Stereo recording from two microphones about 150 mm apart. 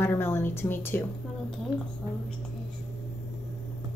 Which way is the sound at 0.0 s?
15° left (ahead or behind).